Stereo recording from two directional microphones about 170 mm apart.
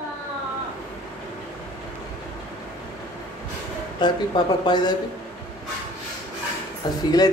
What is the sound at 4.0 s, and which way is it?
Speech, 25° left (ahead or behind).